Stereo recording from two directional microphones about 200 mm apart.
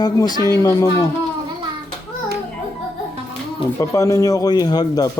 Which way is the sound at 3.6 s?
15° left (ahead or behind).